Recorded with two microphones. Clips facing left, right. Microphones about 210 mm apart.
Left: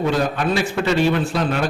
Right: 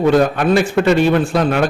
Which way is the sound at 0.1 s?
50° right (ahead or behind).